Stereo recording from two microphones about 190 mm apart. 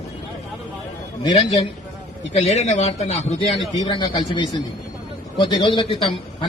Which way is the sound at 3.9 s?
25° left (ahead or behind).